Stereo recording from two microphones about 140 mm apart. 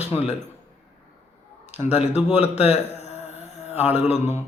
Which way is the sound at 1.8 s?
50° left (ahead or behind).